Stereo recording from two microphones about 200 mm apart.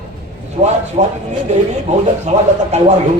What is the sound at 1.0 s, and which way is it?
Music, 30° right (ahead or behind).